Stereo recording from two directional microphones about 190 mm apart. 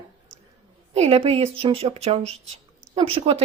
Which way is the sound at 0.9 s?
35° right (ahead or behind).